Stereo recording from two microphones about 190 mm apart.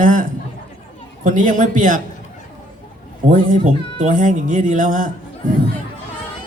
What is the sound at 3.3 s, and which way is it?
Speech, 45° right (ahead or behind).